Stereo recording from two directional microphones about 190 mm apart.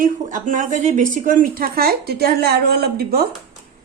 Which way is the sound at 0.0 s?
45° right (ahead or behind).